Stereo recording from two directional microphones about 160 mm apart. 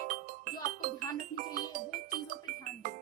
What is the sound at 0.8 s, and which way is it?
Music, 55° right (ahead or behind).